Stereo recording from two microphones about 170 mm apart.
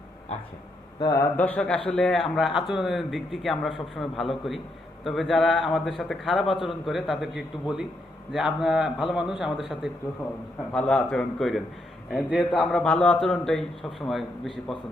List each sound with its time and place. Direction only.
0.9 s speech: 20° left (ahead or behind)
1.4 s a man's voice: 10° left (ahead or behind)